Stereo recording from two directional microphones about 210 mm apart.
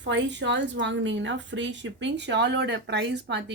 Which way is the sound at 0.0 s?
55° right (ahead or behind).